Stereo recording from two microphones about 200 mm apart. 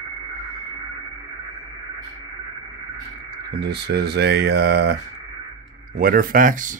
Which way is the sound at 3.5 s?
55° right (ahead or behind).